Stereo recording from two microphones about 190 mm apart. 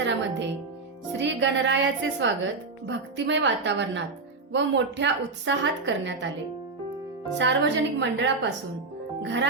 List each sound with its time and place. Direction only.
0.0 s music: 70° right (ahead or behind)
1.2 s a woman's voice: 70° right (ahead or behind)
7.3 s a woman's voice: 70° right (ahead or behind)